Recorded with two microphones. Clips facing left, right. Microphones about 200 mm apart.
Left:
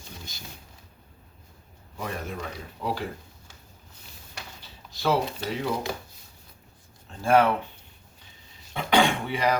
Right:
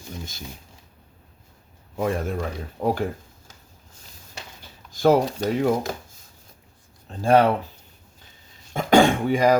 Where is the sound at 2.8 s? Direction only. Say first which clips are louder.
Right 7 dB; 50° right (ahead or behind).